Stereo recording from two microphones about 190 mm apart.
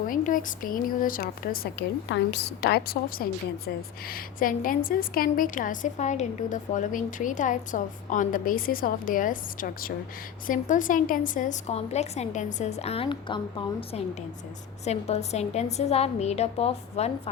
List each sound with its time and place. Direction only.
0.1 s a woman's voice: 45° left (ahead or behind)